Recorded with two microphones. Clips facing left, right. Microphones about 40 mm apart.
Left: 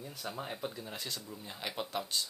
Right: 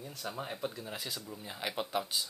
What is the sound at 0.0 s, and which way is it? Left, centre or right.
Speech, centre.